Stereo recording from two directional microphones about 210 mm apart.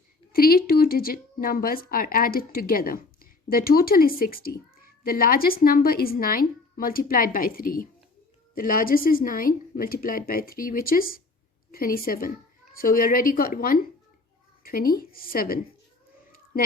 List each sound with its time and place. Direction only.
0.3 s a woman's voice: 45° left (ahead or behind)